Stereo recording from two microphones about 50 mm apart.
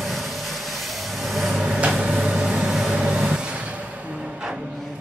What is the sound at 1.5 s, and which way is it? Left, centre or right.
Vehicle, centre.